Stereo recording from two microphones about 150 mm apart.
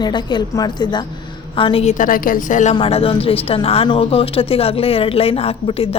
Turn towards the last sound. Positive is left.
turn(degrees=40)  # may be behind; listen again after turning